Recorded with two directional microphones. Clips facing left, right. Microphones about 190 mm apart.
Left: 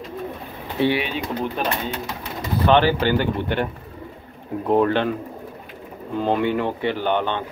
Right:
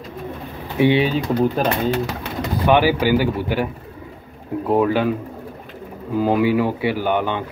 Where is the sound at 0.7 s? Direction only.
15° right (ahead or behind).